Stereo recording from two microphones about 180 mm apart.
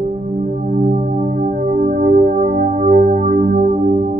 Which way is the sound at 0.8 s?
45° right (ahead or behind).